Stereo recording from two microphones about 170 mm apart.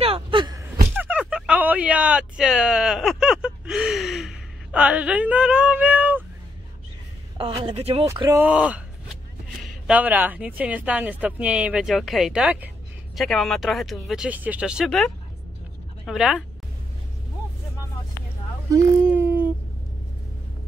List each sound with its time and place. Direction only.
0.0 s gasp: 30° right (ahead or behind)
0.9 s a sound: 10° right (ahead or behind)
7.6 s speech: 35° right (ahead or behind)
8.1 s speech: 20° right (ahead or behind)
8.5 s speech: 10° right (ahead or behind)
9.8 s speech: 10° right (ahead or behind)
18.7 s a sound: 15° right (ahead or behind)